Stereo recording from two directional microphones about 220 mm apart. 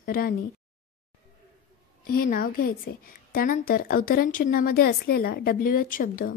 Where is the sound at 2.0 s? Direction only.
40° left (ahead or behind).